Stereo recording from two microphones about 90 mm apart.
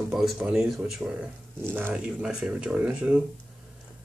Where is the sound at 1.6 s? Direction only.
25° right (ahead or behind).